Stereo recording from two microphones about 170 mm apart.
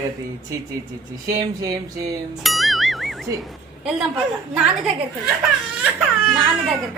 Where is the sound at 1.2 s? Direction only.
20° right (ahead or behind).